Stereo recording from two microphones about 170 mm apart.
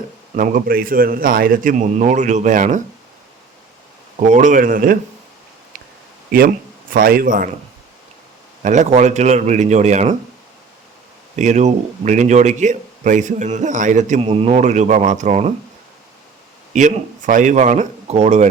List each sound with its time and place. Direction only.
0.3 s a man's voice: 55° right (ahead or behind)
2.0 s speech: 45° right (ahead or behind)
4.3 s speech: 45° right (ahead or behind)
6.9 s a man's voice: 60° right (ahead or behind)
8.6 s speech: 45° right (ahead or behind)
11.3 s speech: 45° right (ahead or behind)
14.2 s speech: 35° right (ahead or behind)
16.7 s speech: 50° right (ahead or behind)